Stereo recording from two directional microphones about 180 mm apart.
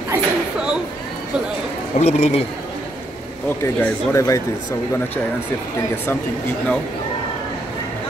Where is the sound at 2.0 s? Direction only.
35° left (ahead or behind).